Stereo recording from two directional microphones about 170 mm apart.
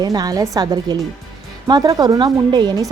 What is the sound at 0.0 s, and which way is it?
A woman's voice, 20° right (ahead or behind).